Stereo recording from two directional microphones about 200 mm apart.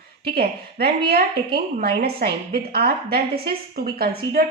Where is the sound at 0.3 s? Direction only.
50° right (ahead or behind).